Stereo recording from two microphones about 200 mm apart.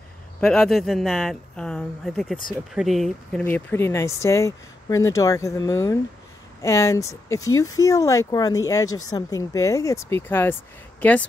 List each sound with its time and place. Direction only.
0.4 s speech: 5° left (ahead or behind)
3.4 s speech: 10° left (ahead or behind)
7.5 s speech: 90° left
7.8 s speech: 15° left (ahead or behind)